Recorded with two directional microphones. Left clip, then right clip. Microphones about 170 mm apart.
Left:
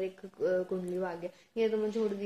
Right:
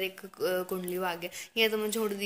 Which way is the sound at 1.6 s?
20° right (ahead or behind).